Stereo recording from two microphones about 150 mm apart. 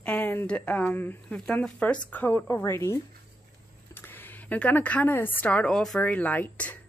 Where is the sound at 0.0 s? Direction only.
10° left (ahead or behind).